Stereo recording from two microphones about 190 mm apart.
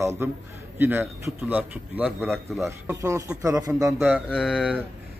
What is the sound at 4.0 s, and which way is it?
Speech, centre (ahead or behind).